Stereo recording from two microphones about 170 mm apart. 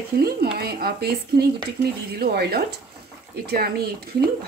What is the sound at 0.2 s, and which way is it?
Speech, 65° right (ahead or behind).